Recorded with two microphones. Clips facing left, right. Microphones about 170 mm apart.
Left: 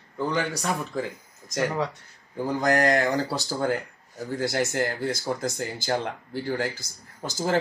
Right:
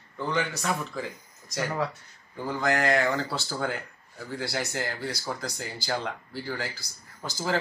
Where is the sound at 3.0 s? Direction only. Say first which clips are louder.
Left 2 dB; 15° left (ahead or behind).